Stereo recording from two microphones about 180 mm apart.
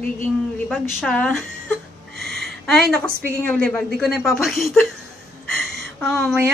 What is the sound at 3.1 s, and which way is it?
Speech, 55° right (ahead or behind).